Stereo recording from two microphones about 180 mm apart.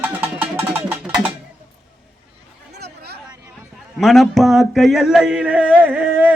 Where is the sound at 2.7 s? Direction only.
65° right (ahead or behind).